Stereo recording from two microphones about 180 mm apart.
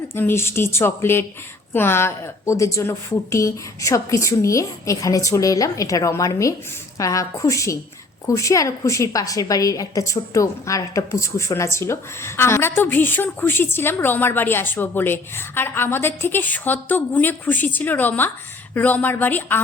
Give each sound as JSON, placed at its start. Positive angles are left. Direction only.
{"t": 0.1, "sound": "a woman's voice", "side_deg": 15}